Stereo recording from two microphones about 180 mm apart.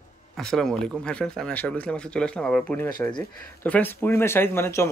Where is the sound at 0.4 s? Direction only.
5° left (ahead or behind).